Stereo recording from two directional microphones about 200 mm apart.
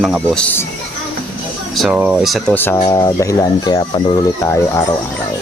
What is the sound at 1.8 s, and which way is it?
Speech, 5° right (ahead or behind).